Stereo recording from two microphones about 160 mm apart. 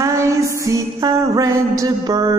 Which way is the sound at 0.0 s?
20° right (ahead or behind).